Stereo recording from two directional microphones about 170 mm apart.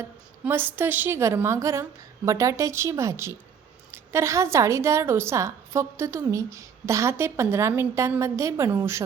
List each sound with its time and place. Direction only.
0.0 s a woman's voice: 15° right (ahead or behind)